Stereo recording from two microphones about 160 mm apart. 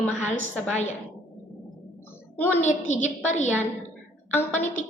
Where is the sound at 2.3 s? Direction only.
10° left (ahead or behind).